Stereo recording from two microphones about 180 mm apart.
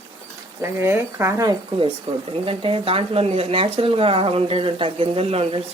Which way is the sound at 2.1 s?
35° right (ahead or behind).